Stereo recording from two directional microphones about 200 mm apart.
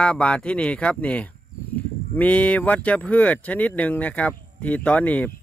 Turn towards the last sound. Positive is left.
turn(degrees=5)  # may be behind; listen again after turning